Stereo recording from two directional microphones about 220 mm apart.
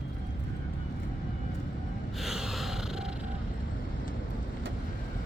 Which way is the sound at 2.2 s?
Centre (ahead or behind).